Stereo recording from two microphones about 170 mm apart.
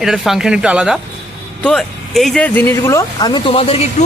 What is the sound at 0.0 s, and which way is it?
A man's voice, centre (ahead or behind).